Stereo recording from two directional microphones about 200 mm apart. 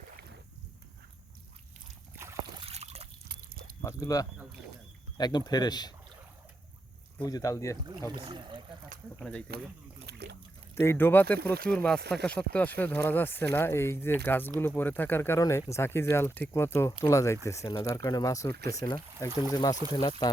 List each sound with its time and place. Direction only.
2.6 s trickle: 30° right (ahead or behind)
3.2 s a sound: 50° right (ahead or behind)
3.8 s speech: 15° left (ahead or behind)
7.2 s speech: 20° left (ahead or behind)
8.1 s speech: 25° right (ahead or behind)
10.1 s a sound: 55° right (ahead or behind)
10.8 s speech: 10° left (ahead or behind)